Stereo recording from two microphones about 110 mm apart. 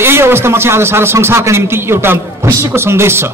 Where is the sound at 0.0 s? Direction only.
20° right (ahead or behind).